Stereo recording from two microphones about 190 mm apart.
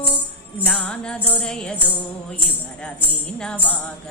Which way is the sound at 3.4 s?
5° left (ahead or behind).